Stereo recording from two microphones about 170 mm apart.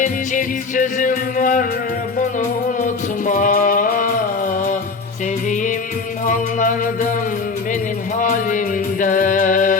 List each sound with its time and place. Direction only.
0.0 s music: 50° left (ahead or behind)
2.6 s music: 50° left (ahead or behind)
6.2 s music: 50° left (ahead or behind)
8.2 s music: 50° left (ahead or behind)